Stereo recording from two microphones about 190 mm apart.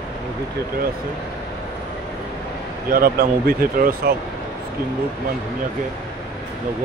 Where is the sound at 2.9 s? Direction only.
50° right (ahead or behind).